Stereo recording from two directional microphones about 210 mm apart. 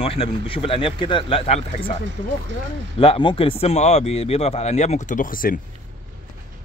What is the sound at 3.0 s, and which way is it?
Speech, 25° left (ahead or behind).